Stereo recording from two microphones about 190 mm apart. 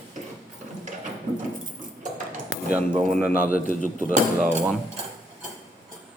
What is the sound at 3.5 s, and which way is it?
Speech, 45° left (ahead or behind).